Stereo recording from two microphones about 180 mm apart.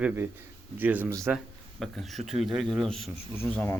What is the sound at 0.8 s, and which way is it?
Speech, 10° right (ahead or behind).